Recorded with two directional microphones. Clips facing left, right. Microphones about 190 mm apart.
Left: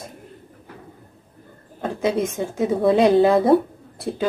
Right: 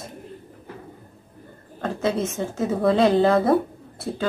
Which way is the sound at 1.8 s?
10° left (ahead or behind).